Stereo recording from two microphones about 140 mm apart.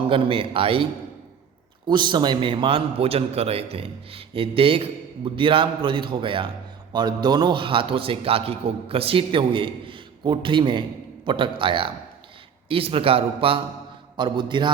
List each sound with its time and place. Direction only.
0.1 s a man's voice: 40° right (ahead or behind)
1.9 s a man's voice: 35° right (ahead or behind)